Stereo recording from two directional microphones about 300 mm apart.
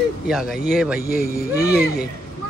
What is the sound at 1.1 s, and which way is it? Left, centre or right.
Speech, left.